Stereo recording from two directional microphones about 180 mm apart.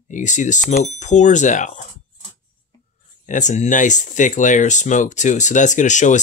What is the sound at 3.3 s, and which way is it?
Speech, 45° left (ahead or behind).